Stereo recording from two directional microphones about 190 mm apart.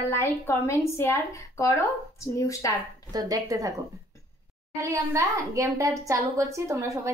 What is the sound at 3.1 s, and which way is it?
Speech, 20° right (ahead or behind).